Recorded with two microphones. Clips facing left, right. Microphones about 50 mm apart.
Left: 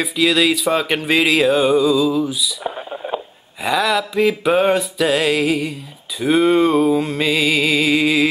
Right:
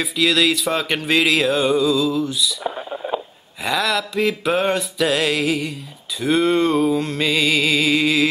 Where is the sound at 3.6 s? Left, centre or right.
Centre.